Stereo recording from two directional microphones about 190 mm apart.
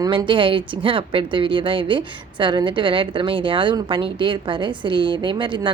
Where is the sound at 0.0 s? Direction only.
25° right (ahead or behind).